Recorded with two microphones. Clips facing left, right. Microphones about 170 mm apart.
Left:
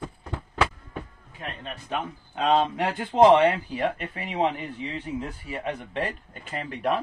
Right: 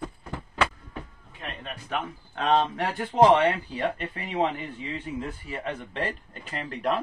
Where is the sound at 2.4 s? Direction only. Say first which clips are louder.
Left 1 dB; 15° left (ahead or behind).